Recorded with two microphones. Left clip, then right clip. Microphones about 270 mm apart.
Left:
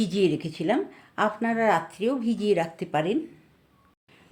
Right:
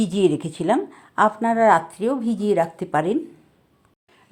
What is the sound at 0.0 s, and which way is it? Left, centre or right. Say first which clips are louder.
A woman's voice: right 4 dB; centre.